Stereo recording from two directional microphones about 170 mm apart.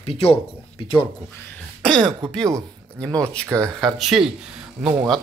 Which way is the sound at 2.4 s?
20° right (ahead or behind).